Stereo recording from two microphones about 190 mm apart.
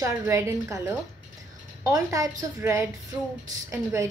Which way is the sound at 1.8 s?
15° right (ahead or behind).